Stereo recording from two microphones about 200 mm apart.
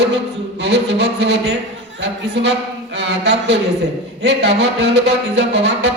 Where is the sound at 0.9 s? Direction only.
55° right (ahead or behind).